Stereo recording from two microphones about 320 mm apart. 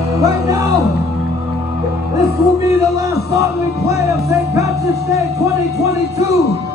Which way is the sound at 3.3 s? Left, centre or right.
Centre.